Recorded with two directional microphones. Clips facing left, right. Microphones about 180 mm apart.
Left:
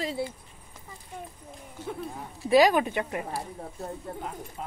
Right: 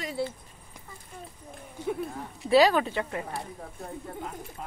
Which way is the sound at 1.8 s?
15° right (ahead or behind).